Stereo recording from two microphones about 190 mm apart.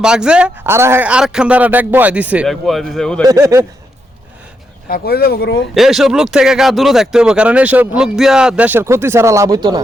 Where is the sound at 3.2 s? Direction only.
15° right (ahead or behind).